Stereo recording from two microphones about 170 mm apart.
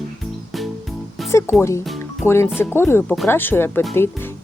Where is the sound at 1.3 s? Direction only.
15° left (ahead or behind).